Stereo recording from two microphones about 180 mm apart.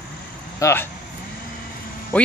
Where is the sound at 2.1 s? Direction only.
10° left (ahead or behind).